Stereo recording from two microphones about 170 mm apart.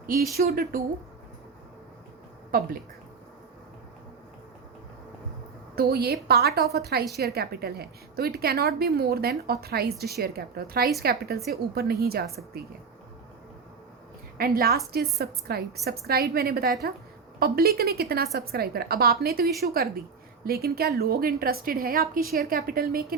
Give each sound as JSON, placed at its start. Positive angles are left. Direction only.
{"t": 0.3, "sound": "a woman's voice", "side_deg": -60}
{"t": 2.5, "sound": "a woman's voice", "side_deg": -60}
{"t": 5.7, "sound": "a woman's voice", "side_deg": -70}
{"t": 14.3, "sound": "a woman's voice", "side_deg": -60}